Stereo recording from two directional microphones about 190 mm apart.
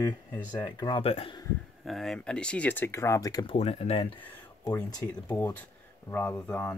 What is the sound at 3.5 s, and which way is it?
Speech, 30° left (ahead or behind).